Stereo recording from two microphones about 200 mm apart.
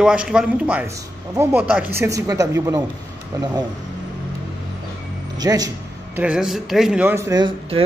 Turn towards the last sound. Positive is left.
turn(degrees=-20)  # may be behind; listen again after turning